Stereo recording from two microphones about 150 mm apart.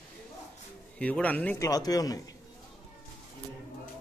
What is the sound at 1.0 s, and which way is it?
Speech, 10° left (ahead or behind).